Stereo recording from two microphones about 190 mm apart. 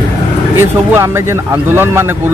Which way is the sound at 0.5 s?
15° right (ahead or behind).